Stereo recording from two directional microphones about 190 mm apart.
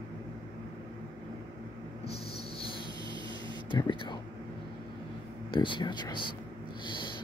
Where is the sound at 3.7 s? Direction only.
25° left (ahead or behind).